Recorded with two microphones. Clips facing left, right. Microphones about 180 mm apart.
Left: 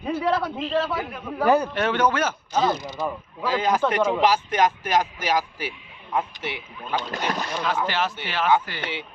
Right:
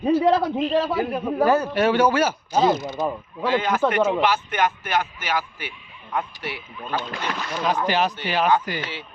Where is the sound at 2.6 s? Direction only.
20° right (ahead or behind).